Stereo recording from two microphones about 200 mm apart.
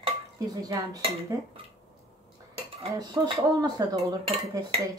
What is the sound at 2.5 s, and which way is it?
Dishes, 30° right (ahead or behind).